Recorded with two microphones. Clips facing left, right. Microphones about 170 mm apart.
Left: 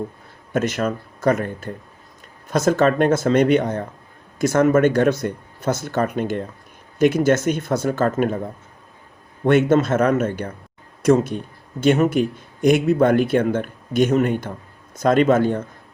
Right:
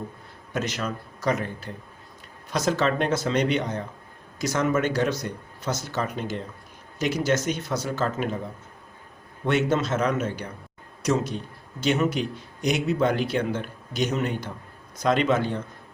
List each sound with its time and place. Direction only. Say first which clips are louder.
0.5 s a man's voice: left 8 dB; 50° left (ahead or behind)
9.4 s a man's voice: left 8 dB; 50° left (ahead or behind)